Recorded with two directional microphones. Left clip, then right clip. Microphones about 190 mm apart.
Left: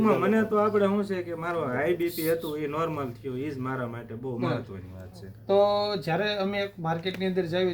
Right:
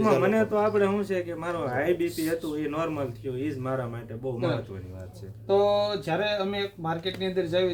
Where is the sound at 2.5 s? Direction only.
25° right (ahead or behind).